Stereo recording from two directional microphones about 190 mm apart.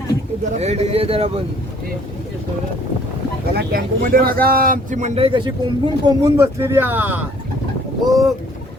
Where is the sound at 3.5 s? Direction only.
55° right (ahead or behind); by 7.2 s 10° right (ahead or behind).